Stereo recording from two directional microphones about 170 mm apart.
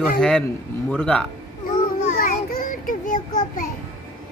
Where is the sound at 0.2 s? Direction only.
5° left (ahead or behind).